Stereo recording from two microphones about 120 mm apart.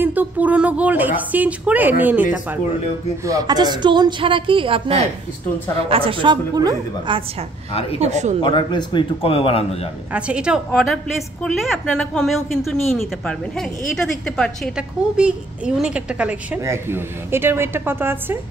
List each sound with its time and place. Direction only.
0.0 s speech: 15° right (ahead or behind)
3.3 s a woman's voice: 30° right (ahead or behind)
8.0 s a woman's voice: 75° right (ahead or behind)
8.4 s a man's voice: 40° left (ahead or behind)
10.1 s a woman's voice: 10° right (ahead or behind)
11.4 s a woman's voice: 5° left (ahead or behind)
14.8 s a woman's voice: 10° right (ahead or behind)
16.6 s a woman's voice: 20° right (ahead or behind)